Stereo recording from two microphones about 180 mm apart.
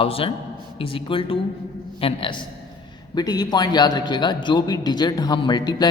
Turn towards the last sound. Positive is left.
turn(degrees=25)  # may be behind; listen again after turning